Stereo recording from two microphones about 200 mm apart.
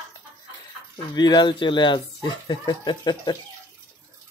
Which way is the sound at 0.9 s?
20° left (ahead or behind).